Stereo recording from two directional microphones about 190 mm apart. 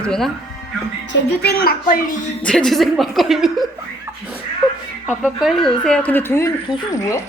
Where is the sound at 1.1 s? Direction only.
55° left (ahead or behind).